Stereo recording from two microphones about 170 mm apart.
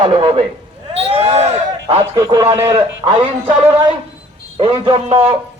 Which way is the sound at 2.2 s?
25° right (ahead or behind).